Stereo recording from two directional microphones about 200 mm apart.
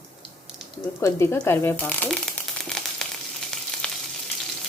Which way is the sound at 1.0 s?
15° left (ahead or behind).